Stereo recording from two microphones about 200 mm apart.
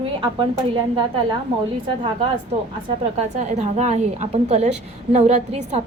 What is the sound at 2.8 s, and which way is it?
A woman's voice, 35° right (ahead or behind).